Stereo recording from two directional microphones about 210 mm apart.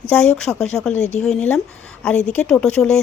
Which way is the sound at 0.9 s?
30° left (ahead or behind).